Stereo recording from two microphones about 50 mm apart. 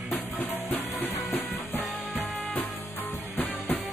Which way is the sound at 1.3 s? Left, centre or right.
Left.